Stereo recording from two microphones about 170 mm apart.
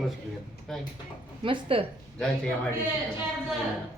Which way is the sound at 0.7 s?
Centre (ahead or behind).